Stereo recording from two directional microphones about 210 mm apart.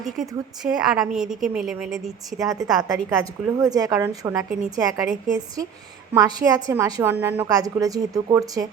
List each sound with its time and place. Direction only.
0.0 s a woman's voice: centre (ahead or behind)
2.4 s a woman's voice: 20° right (ahead or behind)